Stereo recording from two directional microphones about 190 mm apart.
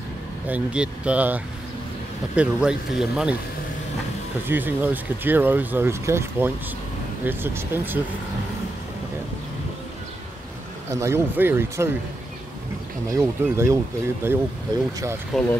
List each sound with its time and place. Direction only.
0.5 s speech: 5° right (ahead or behind)
4.5 s speech: 10° right (ahead or behind)
10.9 s speech: 15° right (ahead or behind)
13.2 s speech: 15° right (ahead or behind)
15.3 s speech: centre (ahead or behind)